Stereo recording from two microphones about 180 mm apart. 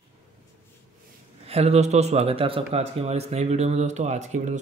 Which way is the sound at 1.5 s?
35° right (ahead or behind).